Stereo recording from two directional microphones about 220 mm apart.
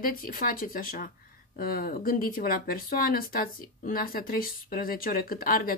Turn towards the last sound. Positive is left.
turn(degrees=40)  # may be behind; listen again after turning